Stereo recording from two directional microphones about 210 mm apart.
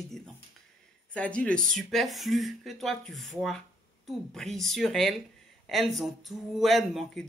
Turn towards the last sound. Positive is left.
turn(degrees=0)  # may be behind; listen again after turning